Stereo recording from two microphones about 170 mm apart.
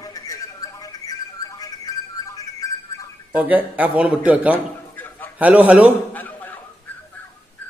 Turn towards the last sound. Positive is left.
turn(degrees=10)  # may be behind; listen again after turning